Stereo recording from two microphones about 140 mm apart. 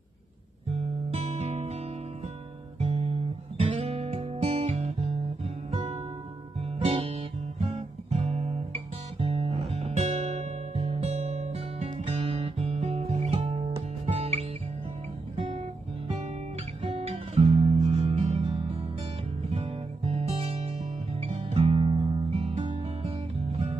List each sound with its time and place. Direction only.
1.1 s music: 50° right (ahead or behind)
2.8 s guitar: 40° right (ahead or behind)
3.7 s music: 50° right (ahead or behind)
6.6 s music: 45° right (ahead or behind)
15.3 s guitar: 40° right (ahead or behind)
16.8 s guitar: 45° right (ahead or behind)
17.9 s music: 45° right (ahead or behind)